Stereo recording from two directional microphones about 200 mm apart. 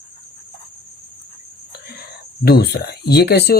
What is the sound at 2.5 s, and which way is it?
Speech, 55° left (ahead or behind).